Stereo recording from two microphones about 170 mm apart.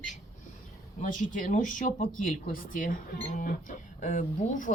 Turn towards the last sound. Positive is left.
turn(degrees=50)  # may be behind; listen again after turning